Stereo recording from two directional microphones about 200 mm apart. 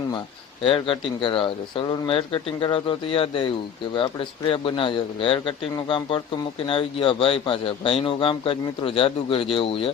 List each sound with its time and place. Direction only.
0.6 s speech: 25° left (ahead or behind)